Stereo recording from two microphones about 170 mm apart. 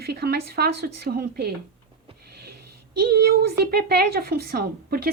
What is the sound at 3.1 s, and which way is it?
A woman's voice, 70° right (ahead or behind).